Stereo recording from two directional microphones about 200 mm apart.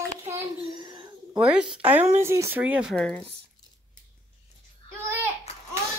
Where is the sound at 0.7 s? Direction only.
20° right (ahead or behind).